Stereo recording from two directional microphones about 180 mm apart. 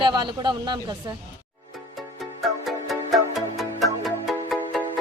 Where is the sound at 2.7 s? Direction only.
Centre (ahead or behind).